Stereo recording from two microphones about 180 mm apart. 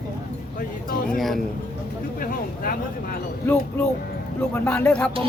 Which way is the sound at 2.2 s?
50° left (ahead or behind).